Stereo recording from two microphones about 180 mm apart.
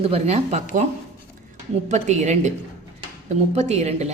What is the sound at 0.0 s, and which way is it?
Speech, 35° right (ahead or behind).